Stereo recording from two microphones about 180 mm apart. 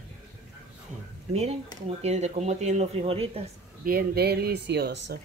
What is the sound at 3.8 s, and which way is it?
Speech, 60° right (ahead or behind).